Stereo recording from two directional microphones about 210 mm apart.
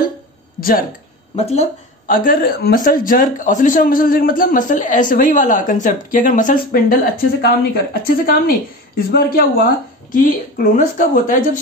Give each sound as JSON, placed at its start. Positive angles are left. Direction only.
{"t": 0.6, "sound": "speech", "side_deg": 45}
{"t": 1.3, "sound": "a woman's voice", "side_deg": 30}